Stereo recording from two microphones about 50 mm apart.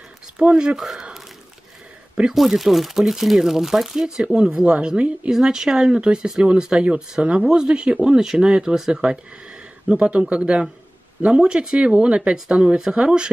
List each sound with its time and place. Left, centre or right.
0.4 s speech: centre
0.7 s a man's voice: centre
2.3 s speech: centre
4.6 s speech: right
5.3 s a man's voice: centre